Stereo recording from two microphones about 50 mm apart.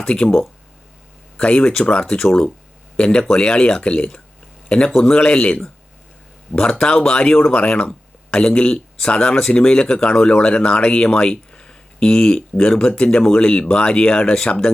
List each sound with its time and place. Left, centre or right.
0.1 s speech: left
1.4 s speech: left
4.9 s speech: centre
5.1 s speech: left